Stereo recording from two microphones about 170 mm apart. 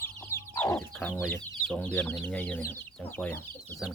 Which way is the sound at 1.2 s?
5° left (ahead or behind).